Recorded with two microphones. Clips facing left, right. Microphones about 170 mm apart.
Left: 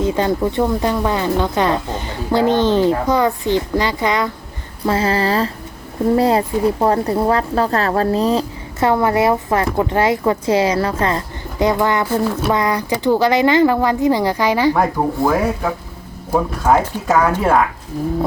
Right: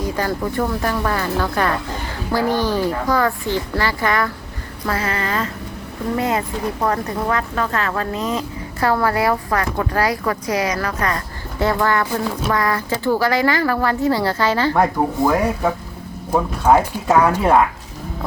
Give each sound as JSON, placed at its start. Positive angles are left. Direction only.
{"t": 0.0, "sound": "a woman's voice", "side_deg": 20}
{"t": 8.9, "sound": "a woman's voice", "side_deg": 20}
{"t": 11.6, "sound": "speech", "side_deg": 15}
{"t": 15.2, "sound": "speech", "side_deg": 0}